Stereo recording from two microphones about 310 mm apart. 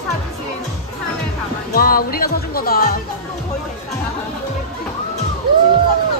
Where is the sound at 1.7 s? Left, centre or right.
Left.